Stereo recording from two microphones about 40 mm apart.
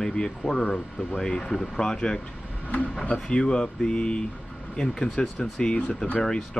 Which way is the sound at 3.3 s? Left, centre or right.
Left.